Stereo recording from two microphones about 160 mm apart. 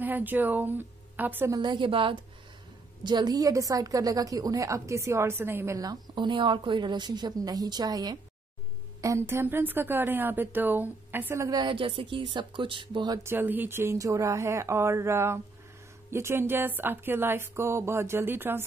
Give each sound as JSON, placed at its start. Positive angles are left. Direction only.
{"t": 0.0, "sound": "a woman's voice", "side_deg": -10}
{"t": 1.6, "sound": "a woman's voice", "side_deg": -30}
{"t": 13.2, "sound": "speech", "side_deg": -15}